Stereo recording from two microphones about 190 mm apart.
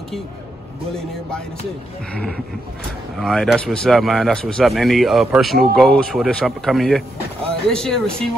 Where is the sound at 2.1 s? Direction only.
Centre (ahead or behind).